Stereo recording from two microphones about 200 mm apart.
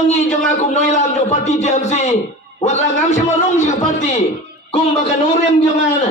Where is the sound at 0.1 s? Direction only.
35° left (ahead or behind).